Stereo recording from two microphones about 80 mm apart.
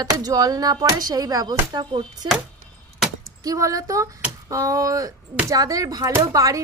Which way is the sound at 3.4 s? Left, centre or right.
Right.